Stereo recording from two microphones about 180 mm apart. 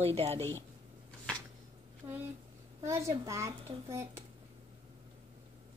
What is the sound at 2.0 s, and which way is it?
A woman's voice, 10° right (ahead or behind).